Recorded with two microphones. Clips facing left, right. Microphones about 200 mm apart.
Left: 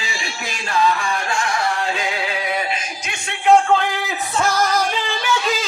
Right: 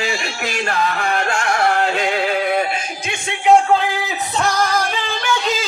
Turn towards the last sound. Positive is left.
turn(degrees=-5)  # may be behind; listen again after turning